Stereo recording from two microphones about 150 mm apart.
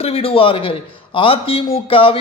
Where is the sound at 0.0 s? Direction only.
40° left (ahead or behind).